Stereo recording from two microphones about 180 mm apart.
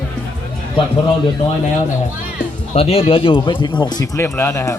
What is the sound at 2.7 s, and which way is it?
Speech, 35° left (ahead or behind).